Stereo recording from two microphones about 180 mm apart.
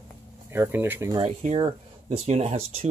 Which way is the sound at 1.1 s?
35° right (ahead or behind).